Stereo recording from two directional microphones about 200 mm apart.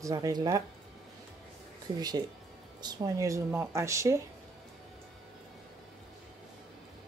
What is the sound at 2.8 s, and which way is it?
Speech, 20° right (ahead or behind).